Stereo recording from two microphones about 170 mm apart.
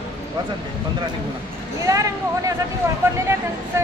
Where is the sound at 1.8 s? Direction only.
20° right (ahead or behind).